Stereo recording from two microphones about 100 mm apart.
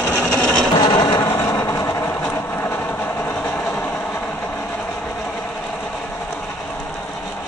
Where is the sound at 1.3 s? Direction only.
30° left (ahead or behind).